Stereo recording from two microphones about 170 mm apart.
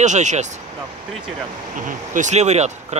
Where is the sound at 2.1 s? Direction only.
45° right (ahead or behind).